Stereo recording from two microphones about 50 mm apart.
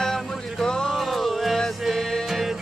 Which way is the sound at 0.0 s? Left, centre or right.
Centre.